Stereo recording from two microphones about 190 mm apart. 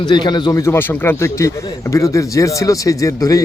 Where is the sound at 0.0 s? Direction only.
25° left (ahead or behind).